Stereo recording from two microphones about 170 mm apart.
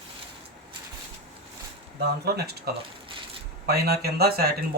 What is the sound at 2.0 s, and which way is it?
Speech, 70° right (ahead or behind).